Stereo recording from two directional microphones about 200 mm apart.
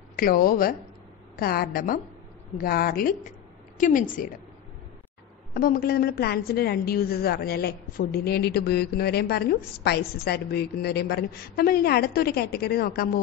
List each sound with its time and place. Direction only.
0.1 s a woman's voice: 45° left (ahead or behind)
5.5 s a woman's voice: 45° left (ahead or behind)